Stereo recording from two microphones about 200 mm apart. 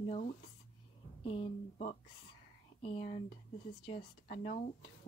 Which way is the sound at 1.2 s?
30° left (ahead or behind).